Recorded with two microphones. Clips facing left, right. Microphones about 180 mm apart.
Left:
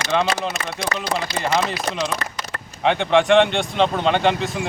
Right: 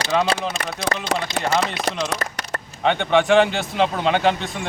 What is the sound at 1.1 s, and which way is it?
Speech, 75° right (ahead or behind).